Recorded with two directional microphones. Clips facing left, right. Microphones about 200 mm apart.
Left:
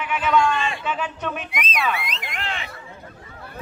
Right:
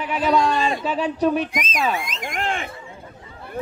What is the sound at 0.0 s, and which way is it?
Speech, 35° right (ahead or behind).